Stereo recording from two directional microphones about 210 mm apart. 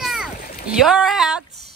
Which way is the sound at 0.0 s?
Centre (ahead or behind).